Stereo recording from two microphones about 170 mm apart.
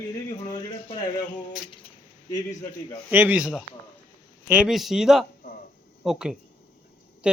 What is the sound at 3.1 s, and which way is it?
Speech, 10° right (ahead or behind).